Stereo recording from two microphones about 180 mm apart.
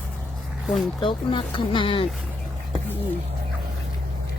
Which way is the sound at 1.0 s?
25° left (ahead or behind).